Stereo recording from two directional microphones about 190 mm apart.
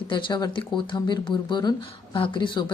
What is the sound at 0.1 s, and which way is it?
Speech, 25° left (ahead or behind).